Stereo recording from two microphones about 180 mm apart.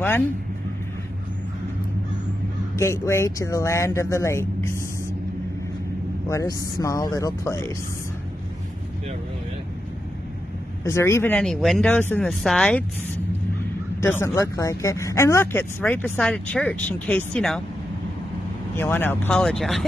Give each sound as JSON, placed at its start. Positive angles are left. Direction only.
{"t": 2.8, "sound": "speech", "side_deg": 15}
{"t": 6.2, "sound": "speech", "side_deg": 20}
{"t": 10.8, "sound": "speech", "side_deg": 15}
{"t": 14.0, "sound": "speech", "side_deg": 15}
{"t": 18.8, "sound": "speech", "side_deg": 10}